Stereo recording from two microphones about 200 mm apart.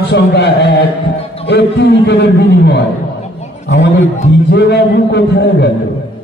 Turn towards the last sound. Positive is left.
turn(degrees=55)  # may be behind; listen again after turning